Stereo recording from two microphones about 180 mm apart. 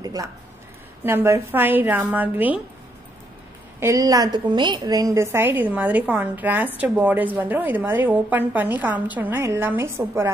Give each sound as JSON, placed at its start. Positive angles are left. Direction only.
{"t": 0.0, "sound": "a sound", "side_deg": -20}
{"t": 1.0, "sound": "a woman's voice", "side_deg": -15}
{"t": 3.8, "sound": "a woman's voice", "side_deg": -20}